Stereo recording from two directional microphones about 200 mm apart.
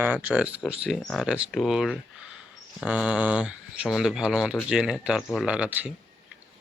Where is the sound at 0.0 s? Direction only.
5° right (ahead or behind).